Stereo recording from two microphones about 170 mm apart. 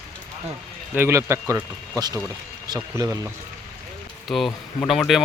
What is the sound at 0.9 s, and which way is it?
Speech, 15° right (ahead or behind).